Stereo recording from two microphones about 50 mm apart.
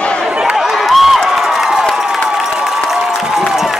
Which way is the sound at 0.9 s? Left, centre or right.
Centre.